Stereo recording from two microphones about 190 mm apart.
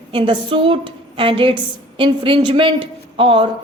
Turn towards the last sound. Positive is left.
turn(degrees=-30)  # may be behind; listen again after turning